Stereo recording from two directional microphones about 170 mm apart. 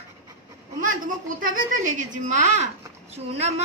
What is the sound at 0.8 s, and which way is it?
A woman's voice, 50° right (ahead or behind).